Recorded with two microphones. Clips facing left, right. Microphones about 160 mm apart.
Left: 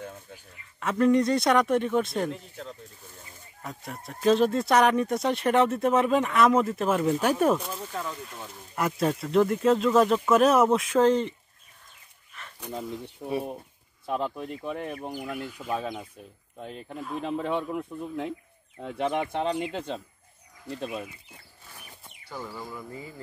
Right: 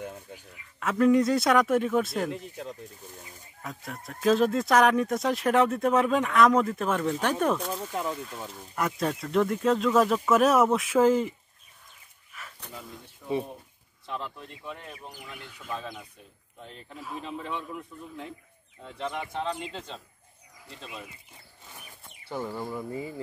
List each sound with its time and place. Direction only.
0.0 s a sound: 10° right (ahead or behind)
0.7 s speech: centre (ahead or behind)
2.3 s speech: 15° right (ahead or behind)
3.6 s speech: centre (ahead or behind)
7.8 s speech: 15° right (ahead or behind)
8.7 s speech: centre (ahead or behind)
12.3 s a sound: 5° right (ahead or behind)
13.2 s speech: 50° left (ahead or behind)
15.3 s speech: 5° left (ahead or behind)
15.7 s speech: 50° left (ahead or behind)
17.2 s speech: 50° left (ahead or behind)
22.3 s speech: 25° right (ahead or behind)